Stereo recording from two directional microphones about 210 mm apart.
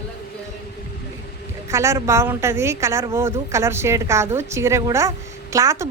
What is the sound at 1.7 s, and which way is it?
A woman's voice, 15° right (ahead or behind).